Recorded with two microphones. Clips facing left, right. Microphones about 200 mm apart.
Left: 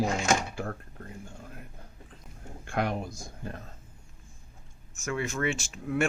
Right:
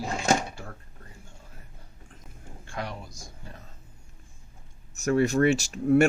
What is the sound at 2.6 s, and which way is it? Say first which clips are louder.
Speech: left 6 dB; 55° left (ahead or behind).